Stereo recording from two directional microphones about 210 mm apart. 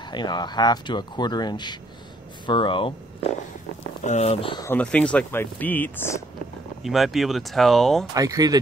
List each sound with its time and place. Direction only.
0.1 s speech: 20° left (ahead or behind)
4.6 s speech: 5° left (ahead or behind)
6.8 s speech: centre (ahead or behind)
8.1 s speech: 15° right (ahead or behind)